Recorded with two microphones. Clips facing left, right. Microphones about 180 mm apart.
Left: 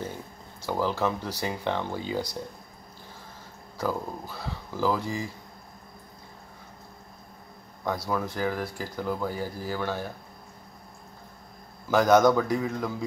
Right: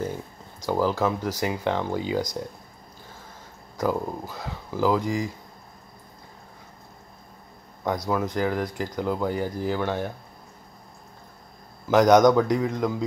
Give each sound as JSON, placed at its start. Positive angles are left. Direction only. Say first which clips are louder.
{"t": 0.7, "sound": "speech", "louder": "right 4 dB", "side_deg": -15}
{"t": 3.7, "sound": "speech", "louder": "right 4 dB", "side_deg": -15}
{"t": 7.8, "sound": "speech", "louder": "right 3 dB", "side_deg": -20}
{"t": 11.9, "sound": "speech", "louder": "right 3 dB", "side_deg": -15}